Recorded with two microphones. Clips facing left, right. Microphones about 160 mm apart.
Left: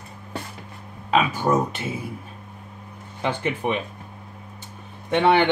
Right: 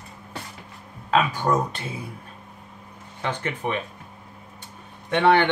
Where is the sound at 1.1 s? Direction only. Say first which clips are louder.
Left 1 dB; 15° left (ahead or behind).